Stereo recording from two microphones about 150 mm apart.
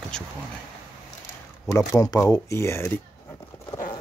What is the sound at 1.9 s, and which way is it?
Speech, 20° left (ahead or behind).